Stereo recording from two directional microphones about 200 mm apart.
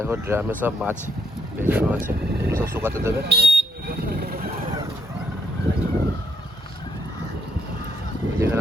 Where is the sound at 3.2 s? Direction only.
55° right (ahead or behind).